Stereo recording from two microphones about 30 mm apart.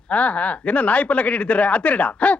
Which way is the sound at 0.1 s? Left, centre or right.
Left.